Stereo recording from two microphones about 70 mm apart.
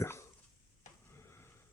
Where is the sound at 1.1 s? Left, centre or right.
Left.